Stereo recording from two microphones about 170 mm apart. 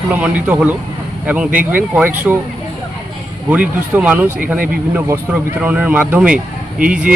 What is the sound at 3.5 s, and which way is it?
Speech, 10° right (ahead or behind).